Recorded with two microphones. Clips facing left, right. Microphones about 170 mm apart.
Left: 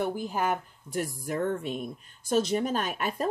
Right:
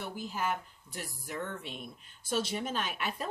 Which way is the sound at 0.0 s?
50° left (ahead or behind).